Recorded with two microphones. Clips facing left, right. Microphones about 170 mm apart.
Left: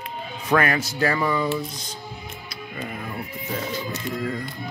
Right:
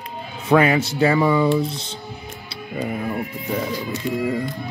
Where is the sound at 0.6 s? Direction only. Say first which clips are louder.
Right 5 dB; 25° right (ahead or behind).